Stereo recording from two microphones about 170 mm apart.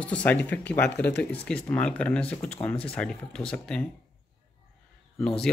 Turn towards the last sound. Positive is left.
turn(degrees=5)  # may be behind; listen again after turning